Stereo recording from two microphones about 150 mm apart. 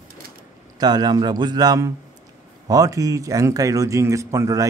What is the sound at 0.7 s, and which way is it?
Speech, 25° right (ahead or behind).